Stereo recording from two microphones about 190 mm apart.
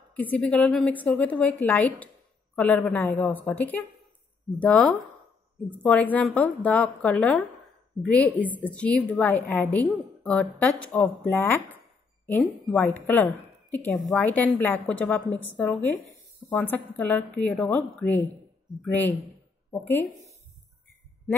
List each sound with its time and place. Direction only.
0.1 s a woman's voice: 10° left (ahead or behind)
18.7 s a woman's voice: 20° right (ahead or behind)
19.7 s a woman's voice: 10° left (ahead or behind)
21.3 s speech: 5° left (ahead or behind)